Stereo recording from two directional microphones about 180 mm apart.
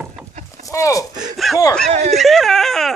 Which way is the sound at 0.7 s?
15° left (ahead or behind).